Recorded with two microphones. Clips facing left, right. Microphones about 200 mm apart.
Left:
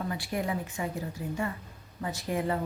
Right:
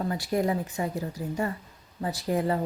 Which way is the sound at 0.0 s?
40° right (ahead or behind).